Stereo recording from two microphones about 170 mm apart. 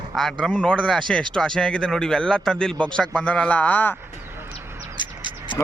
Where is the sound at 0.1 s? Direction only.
Centre (ahead or behind).